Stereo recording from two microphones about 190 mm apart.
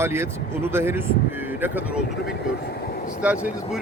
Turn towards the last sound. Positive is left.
turn(degrees=-5)  # may be behind; listen again after turning